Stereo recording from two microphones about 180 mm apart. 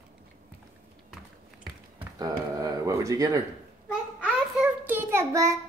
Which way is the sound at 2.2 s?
20° right (ahead or behind).